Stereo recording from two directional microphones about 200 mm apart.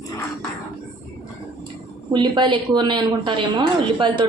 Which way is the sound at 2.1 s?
25° right (ahead or behind).